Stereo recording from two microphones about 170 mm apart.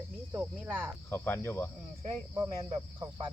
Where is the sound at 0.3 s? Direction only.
5° right (ahead or behind).